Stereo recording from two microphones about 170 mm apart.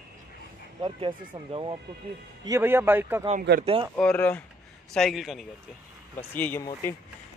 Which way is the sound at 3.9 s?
10° left (ahead or behind).